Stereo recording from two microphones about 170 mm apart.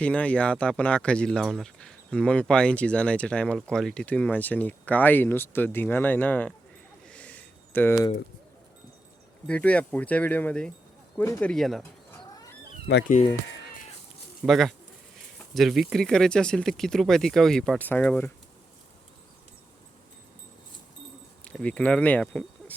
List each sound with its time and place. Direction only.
0.0 s speech: 5° left (ahead or behind)
7.1 s a sound: 10° left (ahead or behind)
9.5 s speech: 5° left (ahead or behind)
11.8 s bird: 15° left (ahead or behind)
12.9 s speech: 80° left
14.4 s speech: centre (ahead or behind)
21.5 s speech: 5° left (ahead or behind)